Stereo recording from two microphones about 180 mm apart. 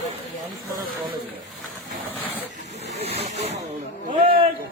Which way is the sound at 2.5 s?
40° right (ahead or behind).